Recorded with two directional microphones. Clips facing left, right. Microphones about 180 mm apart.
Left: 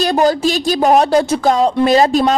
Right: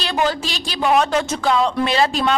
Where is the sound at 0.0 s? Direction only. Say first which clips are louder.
Left 8 dB; 40° left (ahead or behind).